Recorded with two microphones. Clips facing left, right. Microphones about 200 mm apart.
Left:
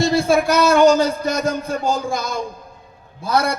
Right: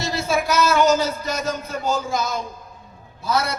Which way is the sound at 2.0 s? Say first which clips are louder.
Left 1 dB; 50° left (ahead or behind).